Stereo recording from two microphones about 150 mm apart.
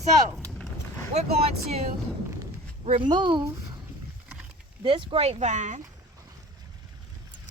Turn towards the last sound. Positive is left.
turn(degrees=-55)  # may be behind; listen again after turning